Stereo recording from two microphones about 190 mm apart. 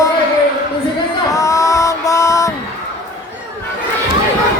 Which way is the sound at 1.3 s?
15° left (ahead or behind).